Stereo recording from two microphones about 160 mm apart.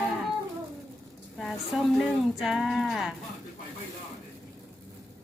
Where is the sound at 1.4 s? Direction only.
Centre (ahead or behind).